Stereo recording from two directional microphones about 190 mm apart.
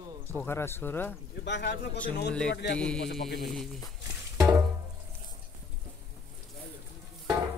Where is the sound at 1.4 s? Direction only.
65° left (ahead or behind).